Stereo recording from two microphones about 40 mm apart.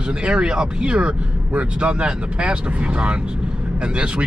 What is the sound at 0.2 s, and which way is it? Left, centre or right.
Speech, right.